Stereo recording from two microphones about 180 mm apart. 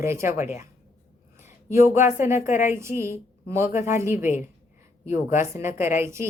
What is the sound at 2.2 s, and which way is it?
A woman's voice, 15° right (ahead or behind).